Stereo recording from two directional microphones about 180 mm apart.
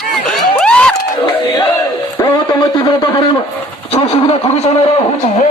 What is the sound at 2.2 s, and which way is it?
Speech, 20° left (ahead or behind).